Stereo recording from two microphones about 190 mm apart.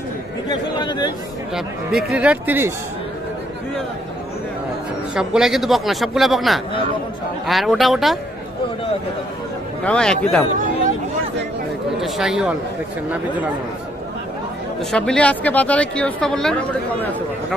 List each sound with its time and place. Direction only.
0.5 s speech: 20° left (ahead or behind)
1.5 s speech: 5° right (ahead or behind)
5.1 s a woman's voice: 5° right (ahead or behind)
9.8 s a woman's voice: 5° left (ahead or behind)
12.0 s a woman's voice: centre (ahead or behind)
14.8 s a woman's voice: 5° left (ahead or behind)